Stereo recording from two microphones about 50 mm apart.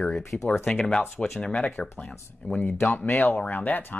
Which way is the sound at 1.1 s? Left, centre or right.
Centre.